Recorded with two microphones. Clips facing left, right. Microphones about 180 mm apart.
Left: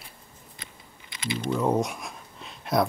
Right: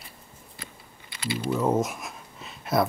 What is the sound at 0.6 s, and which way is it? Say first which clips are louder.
Scissors: right 4 dB; 30° right (ahead or behind).